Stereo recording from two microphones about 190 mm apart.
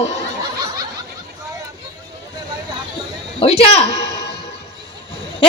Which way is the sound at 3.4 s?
30° left (ahead or behind).